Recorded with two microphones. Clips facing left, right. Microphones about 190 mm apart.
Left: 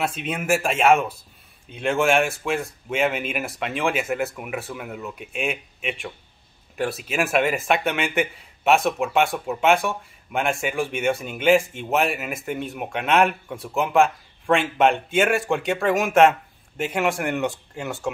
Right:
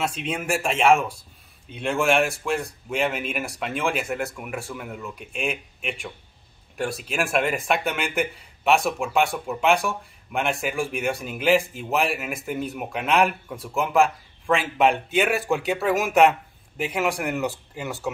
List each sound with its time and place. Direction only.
0.0 s speech: 5° left (ahead or behind)